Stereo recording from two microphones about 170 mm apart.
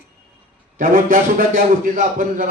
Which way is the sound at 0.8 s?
50° right (ahead or behind).